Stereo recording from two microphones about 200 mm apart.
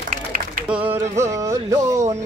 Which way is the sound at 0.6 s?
5° right (ahead or behind).